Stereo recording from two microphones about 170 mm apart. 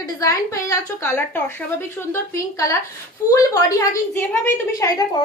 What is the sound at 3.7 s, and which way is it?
A woman's voice, 15° left (ahead or behind).